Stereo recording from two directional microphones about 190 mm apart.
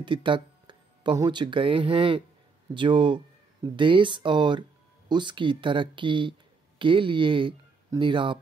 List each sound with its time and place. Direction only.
0.0 s speech: 25° right (ahead or behind)